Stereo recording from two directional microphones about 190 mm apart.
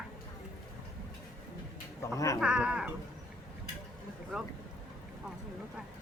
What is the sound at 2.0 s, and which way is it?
Speech, 15° left (ahead or behind).